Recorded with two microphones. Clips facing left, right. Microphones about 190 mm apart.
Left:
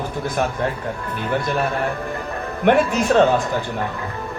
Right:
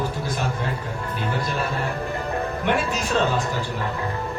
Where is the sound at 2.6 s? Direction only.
55° left (ahead or behind).